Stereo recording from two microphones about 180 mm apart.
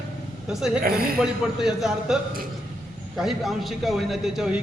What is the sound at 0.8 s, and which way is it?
Speech, 55° right (ahead or behind).